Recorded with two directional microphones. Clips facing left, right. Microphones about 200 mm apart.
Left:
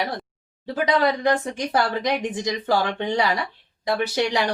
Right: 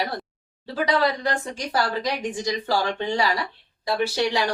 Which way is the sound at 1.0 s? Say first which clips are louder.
Left 3 dB; 20° left (ahead or behind).